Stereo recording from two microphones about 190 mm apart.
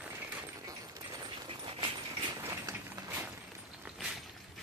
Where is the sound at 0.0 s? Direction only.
5° right (ahead or behind).